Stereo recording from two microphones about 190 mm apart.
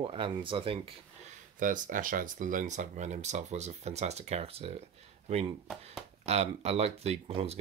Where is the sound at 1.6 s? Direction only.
45° right (ahead or behind).